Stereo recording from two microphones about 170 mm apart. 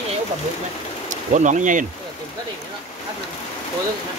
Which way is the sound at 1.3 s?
50° right (ahead or behind).